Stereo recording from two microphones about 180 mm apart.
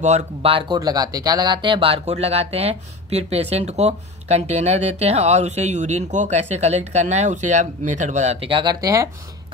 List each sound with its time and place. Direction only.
0.0 s speech: 40° right (ahead or behind); by 9.1 s 20° right (ahead or behind)